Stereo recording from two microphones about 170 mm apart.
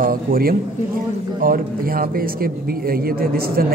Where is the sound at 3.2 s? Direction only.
60° right (ahead or behind).